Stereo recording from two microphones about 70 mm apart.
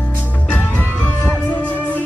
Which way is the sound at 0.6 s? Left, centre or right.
Left.